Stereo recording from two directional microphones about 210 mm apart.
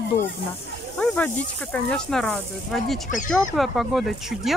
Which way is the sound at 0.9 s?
5° left (ahead or behind).